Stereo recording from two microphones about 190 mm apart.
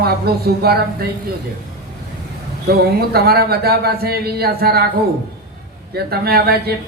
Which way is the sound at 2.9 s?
55° right (ahead or behind).